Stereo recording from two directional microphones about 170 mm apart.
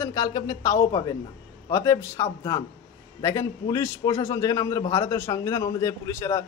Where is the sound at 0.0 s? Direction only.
20° left (ahead or behind).